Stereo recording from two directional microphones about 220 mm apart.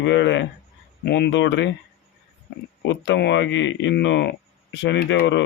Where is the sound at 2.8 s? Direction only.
55° left (ahead or behind).